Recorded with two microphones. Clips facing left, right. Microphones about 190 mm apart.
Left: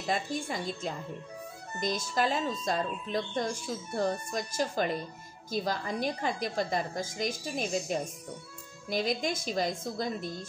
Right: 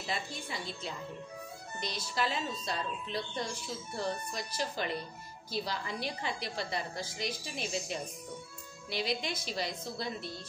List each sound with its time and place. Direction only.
0.0 s speech: 45° left (ahead or behind)